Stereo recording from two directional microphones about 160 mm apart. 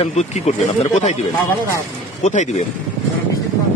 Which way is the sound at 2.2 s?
50° left (ahead or behind).